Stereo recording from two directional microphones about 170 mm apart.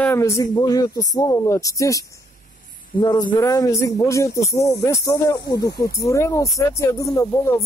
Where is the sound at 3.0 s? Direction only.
25° left (ahead or behind).